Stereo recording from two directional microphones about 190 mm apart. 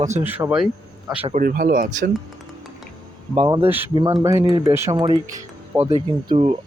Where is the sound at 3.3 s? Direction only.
20° right (ahead or behind).